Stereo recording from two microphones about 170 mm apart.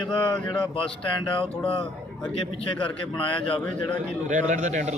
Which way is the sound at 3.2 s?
30° left (ahead or behind).